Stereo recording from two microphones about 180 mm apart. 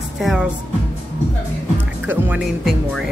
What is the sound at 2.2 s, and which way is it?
Speech, 5° right (ahead or behind).